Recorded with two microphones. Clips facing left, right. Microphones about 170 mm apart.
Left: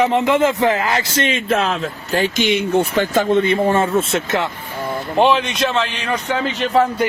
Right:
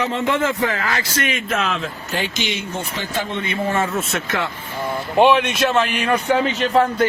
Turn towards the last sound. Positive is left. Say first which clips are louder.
# even
turn(degrees=0)  # may be behind; listen again after turning